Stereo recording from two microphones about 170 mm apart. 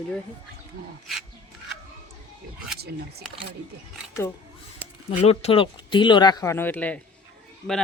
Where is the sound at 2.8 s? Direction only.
70° right (ahead or behind).